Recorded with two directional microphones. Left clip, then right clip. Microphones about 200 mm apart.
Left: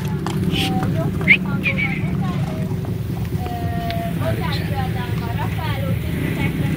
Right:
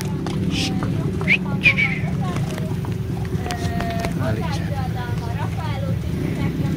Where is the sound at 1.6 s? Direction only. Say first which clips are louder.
Right 4 dB; 45° right (ahead or behind).